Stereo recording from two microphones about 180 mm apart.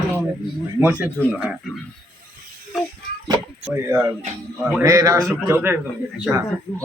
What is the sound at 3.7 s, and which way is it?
Speech, 15° right (ahead or behind).